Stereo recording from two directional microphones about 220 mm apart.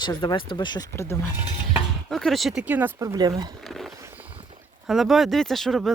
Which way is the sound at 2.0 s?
Centre (ahead or behind).